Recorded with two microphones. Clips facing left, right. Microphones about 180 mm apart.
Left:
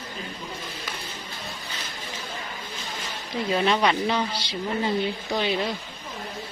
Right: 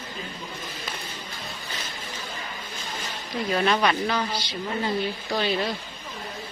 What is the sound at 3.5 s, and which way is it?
Speech, 20° left (ahead or behind).